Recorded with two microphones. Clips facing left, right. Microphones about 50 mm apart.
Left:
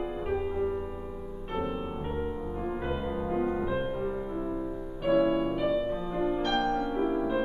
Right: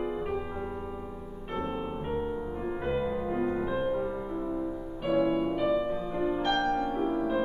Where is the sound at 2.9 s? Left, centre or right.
Centre.